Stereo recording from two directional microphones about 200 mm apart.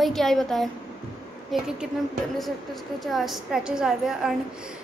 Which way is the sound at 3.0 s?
Centre (ahead or behind).